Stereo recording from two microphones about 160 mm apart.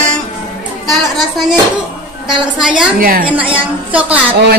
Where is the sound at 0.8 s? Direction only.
Centre (ahead or behind).